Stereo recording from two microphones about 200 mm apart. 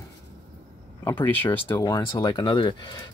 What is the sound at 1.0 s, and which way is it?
Speech, 10° left (ahead or behind).